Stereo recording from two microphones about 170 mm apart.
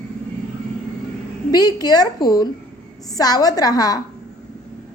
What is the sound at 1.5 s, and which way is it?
A woman's voice, 25° left (ahead or behind).